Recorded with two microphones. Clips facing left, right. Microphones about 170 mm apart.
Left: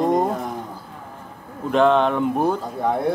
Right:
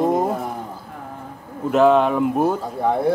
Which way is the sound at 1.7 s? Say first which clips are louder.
Right 2 dB; 5° right (ahead or behind).